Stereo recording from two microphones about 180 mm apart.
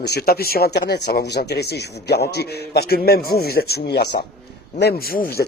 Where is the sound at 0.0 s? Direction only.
60° left (ahead or behind).